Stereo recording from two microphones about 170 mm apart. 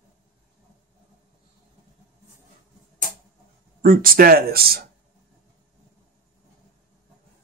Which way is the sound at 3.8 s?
55° right (ahead or behind).